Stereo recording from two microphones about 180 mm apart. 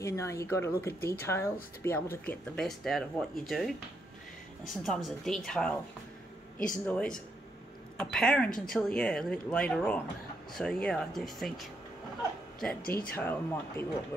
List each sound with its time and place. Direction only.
0.0 s speech: 15° left (ahead or behind); by 3.7 s centre (ahead or behind)
4.8 s speech: centre (ahead or behind)
8.5 s speech: 50° left (ahead or behind)
8.7 s speech: 5° left (ahead or behind)
12.8 s speech: 55° left (ahead or behind)
13.1 s speech: 10° left (ahead or behind)